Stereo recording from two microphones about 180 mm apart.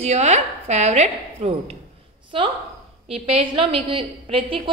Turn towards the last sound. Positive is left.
turn(degrees=-30)  # may be behind; listen again after turning